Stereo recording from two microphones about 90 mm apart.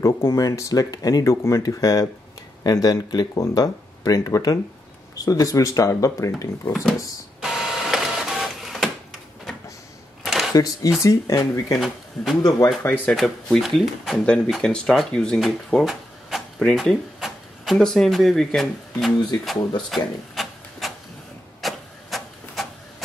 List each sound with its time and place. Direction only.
0.0 s speech: 35° left (ahead or behind)
7.4 s printer: 5° right (ahead or behind)
10.2 s a sound: centre (ahead or behind)
10.5 s speech: 45° left (ahead or behind)
12.8 s speech: 20° left (ahead or behind)
13.1 s speech: centre (ahead or behind)
19.9 s rub: centre (ahead or behind)
21.5 s printer: centre (ahead or behind)